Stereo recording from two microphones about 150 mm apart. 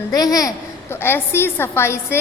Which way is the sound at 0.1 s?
25° left (ahead or behind).